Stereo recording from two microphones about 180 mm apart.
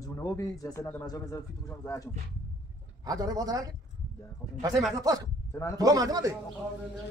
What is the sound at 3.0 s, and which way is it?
Speech, 20° right (ahead or behind).